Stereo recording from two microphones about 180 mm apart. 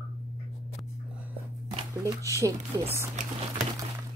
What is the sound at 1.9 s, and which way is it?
Speech, 20° right (ahead or behind).